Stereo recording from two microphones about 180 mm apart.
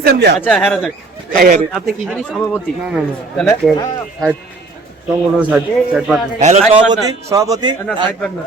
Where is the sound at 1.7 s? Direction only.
Centre (ahead or behind).